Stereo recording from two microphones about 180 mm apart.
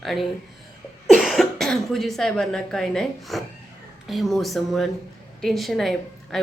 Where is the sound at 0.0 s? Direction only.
Centre (ahead or behind).